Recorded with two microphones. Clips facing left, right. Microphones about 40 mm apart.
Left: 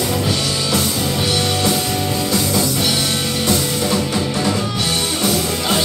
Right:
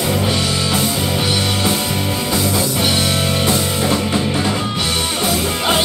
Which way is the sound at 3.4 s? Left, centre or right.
Right.